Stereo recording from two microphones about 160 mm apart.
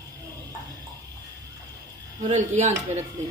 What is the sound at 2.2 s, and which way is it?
Speech, 45° right (ahead or behind).